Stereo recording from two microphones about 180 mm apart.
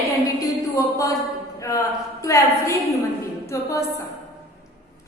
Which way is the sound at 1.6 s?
20° left (ahead or behind).